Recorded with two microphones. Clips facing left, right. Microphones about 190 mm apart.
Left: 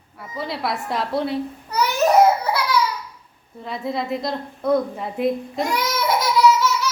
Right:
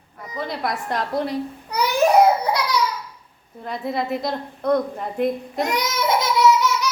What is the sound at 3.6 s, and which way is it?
A woman's voice, centre (ahead or behind).